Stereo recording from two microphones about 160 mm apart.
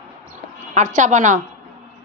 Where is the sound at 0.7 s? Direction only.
50° right (ahead or behind).